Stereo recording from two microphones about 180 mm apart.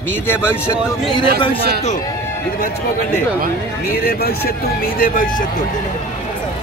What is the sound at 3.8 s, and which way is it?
Speech, 55° left (ahead or behind).